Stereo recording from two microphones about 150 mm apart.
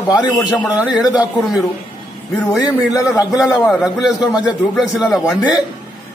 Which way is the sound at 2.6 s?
20° left (ahead or behind).